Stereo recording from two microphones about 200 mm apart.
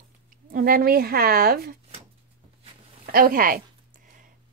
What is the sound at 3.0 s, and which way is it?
Speech, 45° right (ahead or behind).